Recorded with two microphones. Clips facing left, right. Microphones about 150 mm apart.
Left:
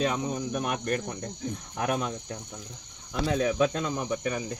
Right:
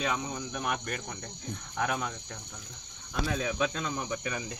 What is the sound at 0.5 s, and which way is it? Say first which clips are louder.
Cricket: left 4 dB; 45° left (ahead or behind).